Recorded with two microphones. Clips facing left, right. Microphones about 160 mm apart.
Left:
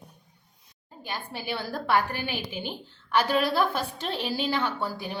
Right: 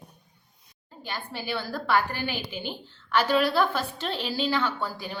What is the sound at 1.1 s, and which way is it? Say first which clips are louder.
A woman's voice: even; 15° left (ahead or behind).